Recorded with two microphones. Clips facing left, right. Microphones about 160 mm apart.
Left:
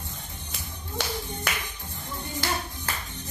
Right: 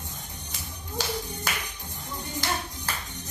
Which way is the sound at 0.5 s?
60° left (ahead or behind).